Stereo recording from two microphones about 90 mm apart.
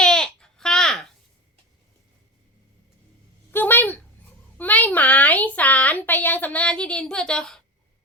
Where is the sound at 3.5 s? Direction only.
20° left (ahead or behind).